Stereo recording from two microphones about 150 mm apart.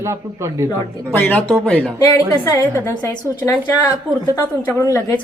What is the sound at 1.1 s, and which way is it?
Speech, 10° left (ahead or behind).